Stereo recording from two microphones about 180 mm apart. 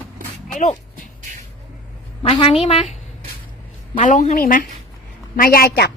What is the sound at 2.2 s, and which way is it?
Speech, 30° left (ahead or behind).